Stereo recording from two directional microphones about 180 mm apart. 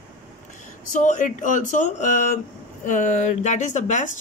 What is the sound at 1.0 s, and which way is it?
Speech, 45° left (ahead or behind).